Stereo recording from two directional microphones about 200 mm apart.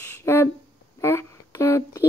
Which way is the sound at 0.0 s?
10° left (ahead or behind).